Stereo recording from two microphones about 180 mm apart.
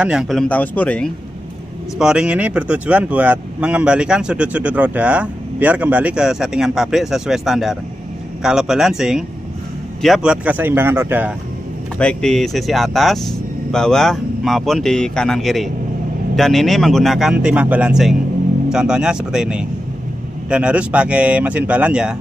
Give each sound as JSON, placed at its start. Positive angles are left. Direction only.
{"t": 0.0, "sound": "speech", "side_deg": -5}
{"t": 2.0, "sound": "speech", "side_deg": -5}
{"t": 12.0, "sound": "speech", "side_deg": 5}